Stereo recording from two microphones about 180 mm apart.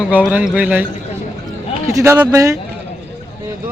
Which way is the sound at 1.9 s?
15° right (ahead or behind).